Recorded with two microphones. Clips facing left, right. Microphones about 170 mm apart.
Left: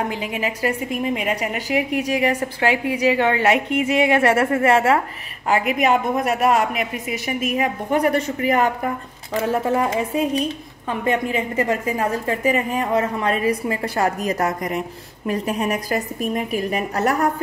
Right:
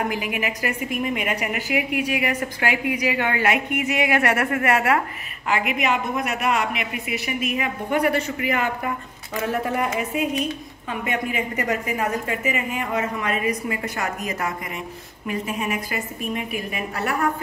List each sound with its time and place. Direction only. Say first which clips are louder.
0.1 s a woman's voice: left 1 dB; 30° left (ahead or behind)
5.5 s a woman's voice: left 5 dB; 40° left (ahead or behind)
9.4 s a woman's voice: left 4 dB; 30° left (ahead or behind)